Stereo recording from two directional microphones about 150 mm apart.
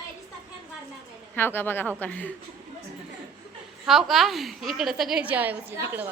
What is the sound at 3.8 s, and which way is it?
A woman's voice, centre (ahead or behind).